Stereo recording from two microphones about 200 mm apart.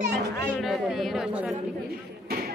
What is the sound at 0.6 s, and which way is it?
Speech, centre (ahead or behind).